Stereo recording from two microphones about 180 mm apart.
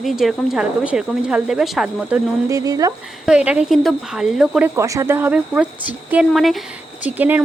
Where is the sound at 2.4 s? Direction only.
20° right (ahead or behind).